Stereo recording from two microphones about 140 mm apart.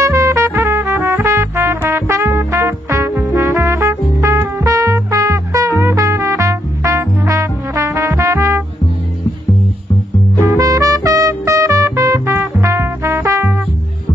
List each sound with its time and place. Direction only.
0.0 s music: 20° right (ahead or behind)
10.4 s music: 20° right (ahead or behind)